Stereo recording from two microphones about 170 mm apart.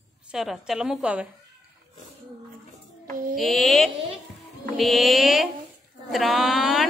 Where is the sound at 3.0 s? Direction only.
55° right (ahead or behind).